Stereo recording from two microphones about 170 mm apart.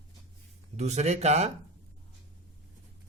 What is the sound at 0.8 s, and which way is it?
Speech, 40° right (ahead or behind).